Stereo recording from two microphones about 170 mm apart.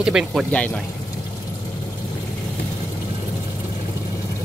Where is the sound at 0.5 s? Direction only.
5° left (ahead or behind).